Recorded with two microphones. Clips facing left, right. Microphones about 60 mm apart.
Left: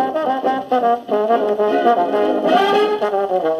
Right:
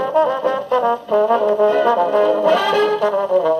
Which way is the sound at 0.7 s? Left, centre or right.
Centre.